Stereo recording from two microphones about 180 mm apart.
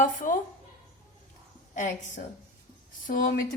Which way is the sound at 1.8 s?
45° left (ahead or behind).